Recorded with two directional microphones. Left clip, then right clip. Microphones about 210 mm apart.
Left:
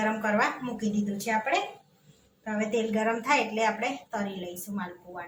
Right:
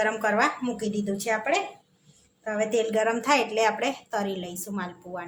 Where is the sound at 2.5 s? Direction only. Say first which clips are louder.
Right 4 dB; 40° right (ahead or behind).